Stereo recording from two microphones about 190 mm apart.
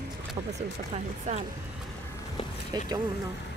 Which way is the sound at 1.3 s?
40° right (ahead or behind).